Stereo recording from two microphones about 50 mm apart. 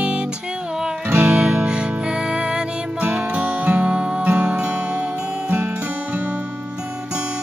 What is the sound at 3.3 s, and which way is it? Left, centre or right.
Music, right.